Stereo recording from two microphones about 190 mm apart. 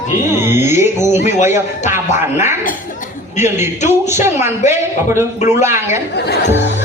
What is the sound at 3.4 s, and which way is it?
Speech, 15° right (ahead or behind).